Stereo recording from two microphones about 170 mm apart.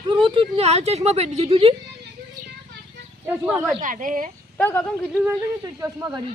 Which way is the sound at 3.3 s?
10° right (ahead or behind).